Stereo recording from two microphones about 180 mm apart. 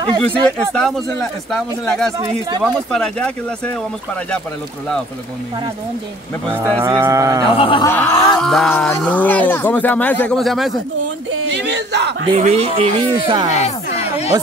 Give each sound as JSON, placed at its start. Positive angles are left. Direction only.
{"t": 0.2, "sound": "speech", "side_deg": 5}
{"t": 6.8, "sound": "speech", "side_deg": -15}
{"t": 7.5, "sound": "speech", "side_deg": 30}
{"t": 7.8, "sound": "speech", "side_deg": 15}
{"t": 8.4, "sound": "speech", "side_deg": 5}
{"t": 11.5, "sound": "speech", "side_deg": -75}
{"t": 12.4, "sound": "speech", "side_deg": -35}
{"t": 13.5, "sound": "a sound", "side_deg": 40}